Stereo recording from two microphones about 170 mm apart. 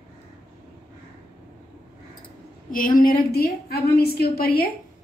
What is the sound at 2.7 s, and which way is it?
A woman's voice, 55° left (ahead or behind).